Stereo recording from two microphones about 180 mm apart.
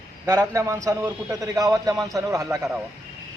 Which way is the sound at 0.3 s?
15° right (ahead or behind).